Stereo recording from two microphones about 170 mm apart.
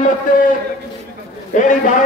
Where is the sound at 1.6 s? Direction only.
50° left (ahead or behind).